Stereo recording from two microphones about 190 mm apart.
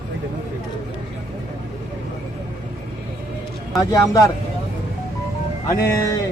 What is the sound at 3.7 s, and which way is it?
Speech, 15° left (ahead or behind).